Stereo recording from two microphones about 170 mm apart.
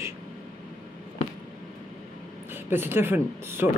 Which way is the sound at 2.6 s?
10° right (ahead or behind).